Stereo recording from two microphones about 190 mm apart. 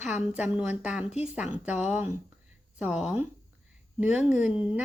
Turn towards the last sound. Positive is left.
turn(degrees=-5)  # may be behind; listen again after turning